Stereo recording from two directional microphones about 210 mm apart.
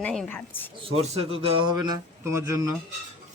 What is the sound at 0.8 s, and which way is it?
Speech, 25° right (ahead or behind).